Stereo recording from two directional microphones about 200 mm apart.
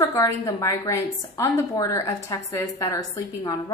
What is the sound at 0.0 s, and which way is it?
A woman's voice, 15° left (ahead or behind).